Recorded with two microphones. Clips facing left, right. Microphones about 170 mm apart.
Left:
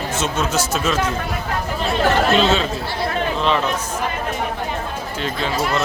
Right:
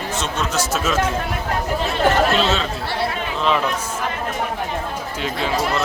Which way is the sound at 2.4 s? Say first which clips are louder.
Left 3 dB; centre (ahead or behind).